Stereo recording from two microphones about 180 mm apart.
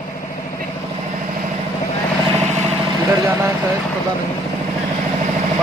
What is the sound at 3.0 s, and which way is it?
Speech, 15° right (ahead or behind).